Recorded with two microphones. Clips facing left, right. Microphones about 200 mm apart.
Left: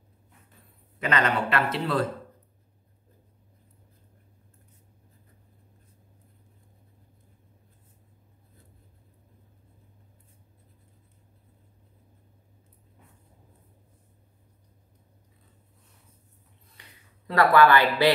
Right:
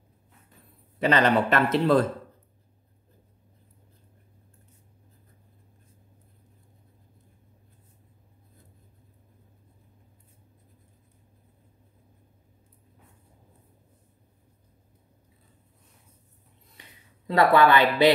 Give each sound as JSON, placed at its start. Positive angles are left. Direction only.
{"t": 0.9, "sound": "a man's voice", "side_deg": -35}
{"t": 17.3, "sound": "a woman's voice", "side_deg": -20}